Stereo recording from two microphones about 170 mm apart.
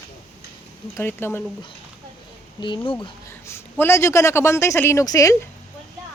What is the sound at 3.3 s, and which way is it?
Speech, 15° left (ahead or behind).